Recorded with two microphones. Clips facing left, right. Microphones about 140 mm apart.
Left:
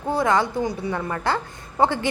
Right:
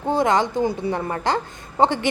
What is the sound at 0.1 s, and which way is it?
A woman's voice, 20° right (ahead or behind).